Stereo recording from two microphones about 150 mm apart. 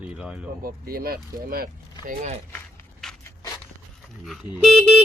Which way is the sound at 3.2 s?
20° left (ahead or behind).